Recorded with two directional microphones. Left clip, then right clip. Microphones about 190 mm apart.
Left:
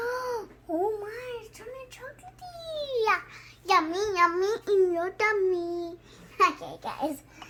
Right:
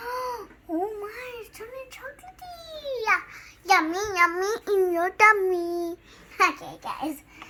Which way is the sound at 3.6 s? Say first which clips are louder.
Right 2 dB; 15° left (ahead or behind).